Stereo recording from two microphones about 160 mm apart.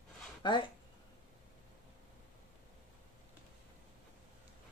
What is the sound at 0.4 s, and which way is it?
Speech, 30° left (ahead or behind).